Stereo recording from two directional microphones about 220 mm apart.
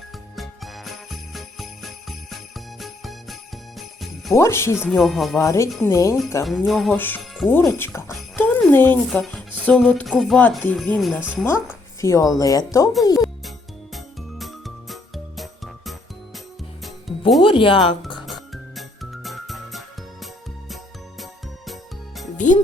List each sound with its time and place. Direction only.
0.3 s jingle bell: centre (ahead or behind)
4.4 s speech: 10° left (ahead or behind)
4.8 s speech: centre (ahead or behind)
5.4 s speech: 15° left (ahead or behind)
6.4 s speech: centre (ahead or behind); by 12.9 s 15° left (ahead or behind)
13.1 s music: centre (ahead or behind)
17.4 s speech: 25° left (ahead or behind)
18.3 s music: centre (ahead or behind)
21.7 s music: centre (ahead or behind)
22.4 s music: 35° left (ahead or behind)